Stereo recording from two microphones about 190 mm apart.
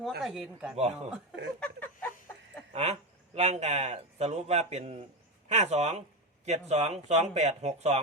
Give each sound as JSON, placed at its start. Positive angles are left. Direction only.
{"t": 0.2, "sound": "speech", "side_deg": 0}
{"t": 0.8, "sound": "speech", "side_deg": -35}
{"t": 1.5, "sound": "a sound", "side_deg": 5}
{"t": 2.7, "sound": "speech", "side_deg": -35}